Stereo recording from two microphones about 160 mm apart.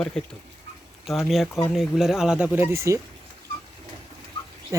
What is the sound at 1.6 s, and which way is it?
Speech, centre (ahead or behind).